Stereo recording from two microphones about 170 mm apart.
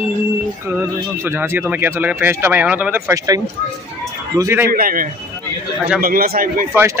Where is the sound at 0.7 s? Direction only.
15° right (ahead or behind).